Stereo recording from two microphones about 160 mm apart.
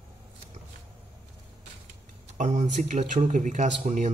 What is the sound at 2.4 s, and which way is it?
A man's voice, 50° right (ahead or behind).